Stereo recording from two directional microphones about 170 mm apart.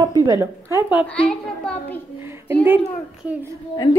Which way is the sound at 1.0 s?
5° left (ahead or behind).